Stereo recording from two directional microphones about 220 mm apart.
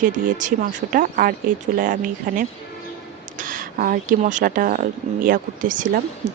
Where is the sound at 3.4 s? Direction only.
35° right (ahead or behind).